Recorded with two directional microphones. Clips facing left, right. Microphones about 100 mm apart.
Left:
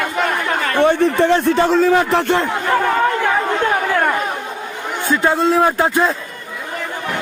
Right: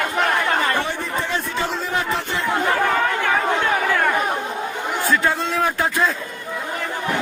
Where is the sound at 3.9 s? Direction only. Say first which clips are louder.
Left 3 dB; 10° left (ahead or behind).